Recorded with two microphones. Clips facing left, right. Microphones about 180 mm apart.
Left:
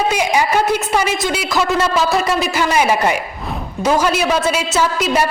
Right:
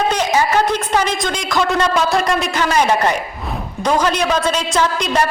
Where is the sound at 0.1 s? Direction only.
10° left (ahead or behind).